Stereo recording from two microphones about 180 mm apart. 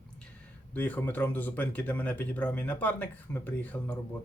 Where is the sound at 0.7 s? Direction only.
10° left (ahead or behind).